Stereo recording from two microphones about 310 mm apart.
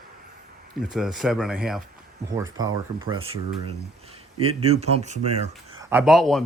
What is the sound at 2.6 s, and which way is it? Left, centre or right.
Speech, centre.